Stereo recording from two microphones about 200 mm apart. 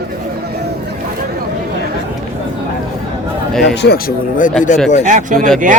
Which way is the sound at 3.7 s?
55° left (ahead or behind).